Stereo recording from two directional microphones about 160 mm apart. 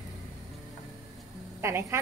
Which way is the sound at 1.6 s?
15° right (ahead or behind).